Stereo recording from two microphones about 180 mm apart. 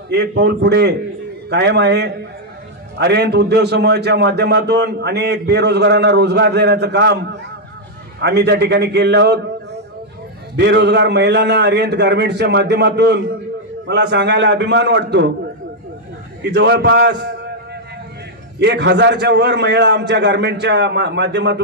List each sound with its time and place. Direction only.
0.1 s a man's voice: 70° right (ahead or behind)
8.2 s a man's voice: 70° right (ahead or behind)
10.5 s a man's voice: 70° right (ahead or behind)
16.4 s a man's voice: 70° right (ahead or behind)
18.6 s a man's voice: 75° right (ahead or behind)